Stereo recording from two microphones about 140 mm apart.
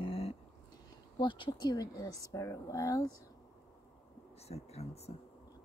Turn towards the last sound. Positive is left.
turn(degrees=50)  # may be behind; listen again after turning